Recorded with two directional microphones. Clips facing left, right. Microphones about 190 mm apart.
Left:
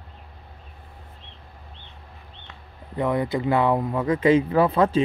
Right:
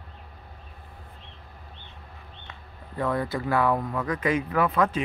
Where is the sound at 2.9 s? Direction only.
20° left (ahead or behind).